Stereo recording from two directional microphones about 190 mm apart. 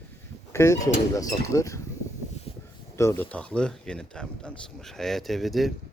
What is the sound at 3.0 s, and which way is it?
A man's voice, 10° left (ahead or behind).